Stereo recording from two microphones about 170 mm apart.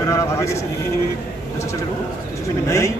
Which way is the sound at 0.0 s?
15° left (ahead or behind).